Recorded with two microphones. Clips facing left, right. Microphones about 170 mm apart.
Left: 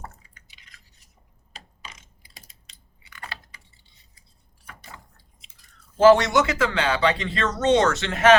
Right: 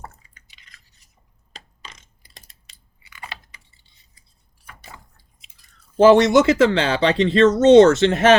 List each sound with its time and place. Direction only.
0.4 s a sound: 5° left (ahead or behind)
1.5 s computer keyboard: 5° left (ahead or behind)
2.6 s crunch: 10° right (ahead or behind)
6.0 s speech: 25° right (ahead or behind)